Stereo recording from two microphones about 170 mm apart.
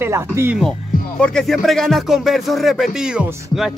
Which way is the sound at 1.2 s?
5° left (ahead or behind).